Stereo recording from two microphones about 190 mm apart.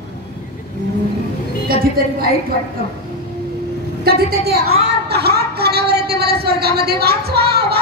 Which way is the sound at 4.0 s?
55° right (ahead or behind).